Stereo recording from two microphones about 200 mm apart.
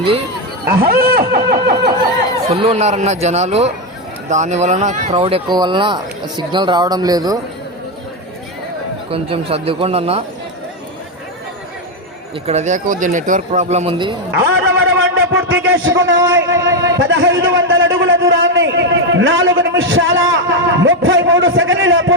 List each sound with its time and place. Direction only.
0.8 s speech: 50° right (ahead or behind)
2.5 s speech: 30° right (ahead or behind)
9.0 s speech: 30° right (ahead or behind)
12.5 s speech: 35° right (ahead or behind)
14.7 s a sound: 55° right (ahead or behind)
14.9 s a sound: 75° right (ahead or behind)
15.6 s a man's voice: 75° right (ahead or behind)
16.6 s a man's voice: 15° right (ahead or behind)
17.0 s a man's voice: 70° right (ahead or behind)